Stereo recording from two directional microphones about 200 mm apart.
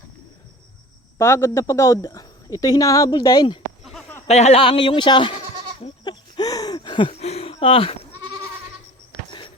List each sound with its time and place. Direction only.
1.2 s speech: 15° left (ahead or behind)
4.3 s goat: 35° left (ahead or behind)